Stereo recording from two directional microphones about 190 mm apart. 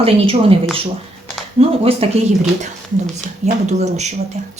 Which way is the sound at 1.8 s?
30° right (ahead or behind).